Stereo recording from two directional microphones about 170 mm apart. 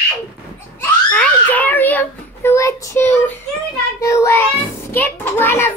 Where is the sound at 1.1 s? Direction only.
10° left (ahead or behind).